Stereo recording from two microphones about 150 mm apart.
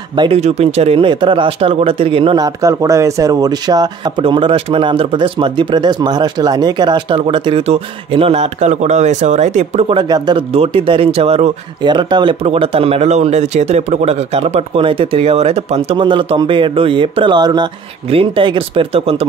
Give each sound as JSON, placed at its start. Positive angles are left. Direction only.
{"t": 0.1, "sound": "speech", "side_deg": -30}
{"t": 0.4, "sound": "speech", "side_deg": -45}
{"t": 2.4, "sound": "speech", "side_deg": -20}
{"t": 9.9, "sound": "speech", "side_deg": -30}
{"t": 10.5, "sound": "speech", "side_deg": -40}
{"t": 11.8, "sound": "speech", "side_deg": -30}